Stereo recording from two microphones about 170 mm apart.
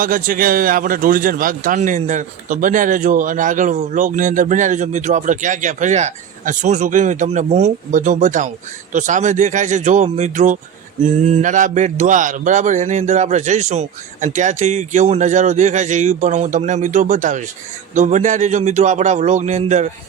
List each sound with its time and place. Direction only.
0.0 s a man's voice: 55° right (ahead or behind)